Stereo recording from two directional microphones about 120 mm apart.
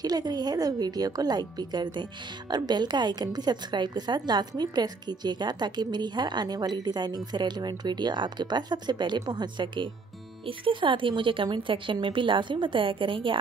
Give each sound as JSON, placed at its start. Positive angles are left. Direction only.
{"t": 0.0, "sound": "a woman's voice", "side_deg": -35}